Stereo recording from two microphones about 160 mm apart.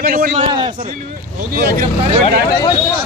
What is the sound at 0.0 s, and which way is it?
Speech, 65° right (ahead or behind).